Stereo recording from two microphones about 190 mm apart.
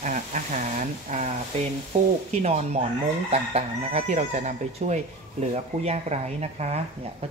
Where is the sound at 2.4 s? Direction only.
35° right (ahead or behind).